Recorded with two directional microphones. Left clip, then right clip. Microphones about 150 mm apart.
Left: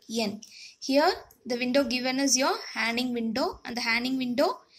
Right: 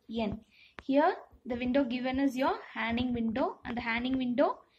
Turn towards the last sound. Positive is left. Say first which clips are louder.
# left 3 dB
turn(degrees=20)  # may be behind; listen again after turning